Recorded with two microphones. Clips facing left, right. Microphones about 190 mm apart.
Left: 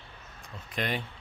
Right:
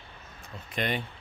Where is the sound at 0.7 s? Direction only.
Centre (ahead or behind).